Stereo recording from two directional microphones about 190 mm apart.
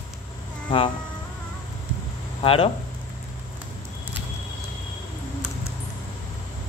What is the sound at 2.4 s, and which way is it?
Speech, 30° left (ahead or behind).